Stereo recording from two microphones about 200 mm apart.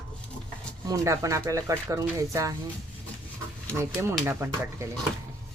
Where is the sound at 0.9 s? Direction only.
15° right (ahead or behind).